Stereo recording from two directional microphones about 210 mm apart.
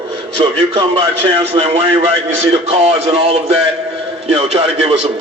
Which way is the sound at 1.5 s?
30° right (ahead or behind).